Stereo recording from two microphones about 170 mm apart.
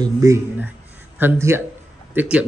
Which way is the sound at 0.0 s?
20° right (ahead or behind).